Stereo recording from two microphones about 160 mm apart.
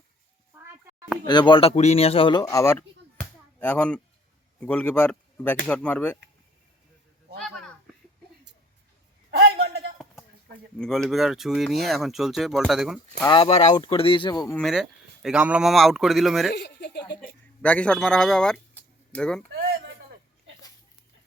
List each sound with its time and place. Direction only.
0.6 s a sound: 20° right (ahead or behind)
1.3 s speech: 30° left (ahead or behind)
2.7 s chop: 10° left (ahead or behind)
4.6 s speech: 10° left (ahead or behind)
10.8 s speech: centre (ahead or behind)
13.2 s speech: 30° left (ahead or behind)
14.5 s speech: centre (ahead or behind)
16.6 s speech: 90° left
17.2 s speech: 10° left (ahead or behind)